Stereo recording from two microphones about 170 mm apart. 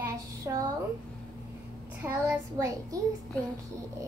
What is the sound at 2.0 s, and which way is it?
Child singing, 15° right (ahead or behind).